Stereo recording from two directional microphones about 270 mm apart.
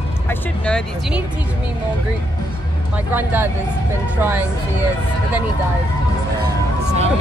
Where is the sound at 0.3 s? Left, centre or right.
Centre.